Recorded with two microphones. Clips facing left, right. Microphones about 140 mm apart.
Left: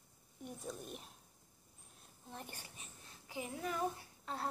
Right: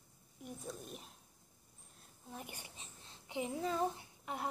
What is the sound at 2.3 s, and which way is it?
Speech, 10° right (ahead or behind).